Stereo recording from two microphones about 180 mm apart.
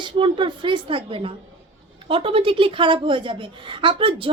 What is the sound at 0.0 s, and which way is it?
A woman's voice, 25° right (ahead or behind).